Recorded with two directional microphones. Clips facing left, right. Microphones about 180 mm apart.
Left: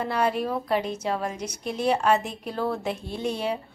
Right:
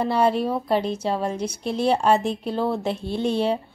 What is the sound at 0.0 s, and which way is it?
A woman's voice, 30° right (ahead or behind).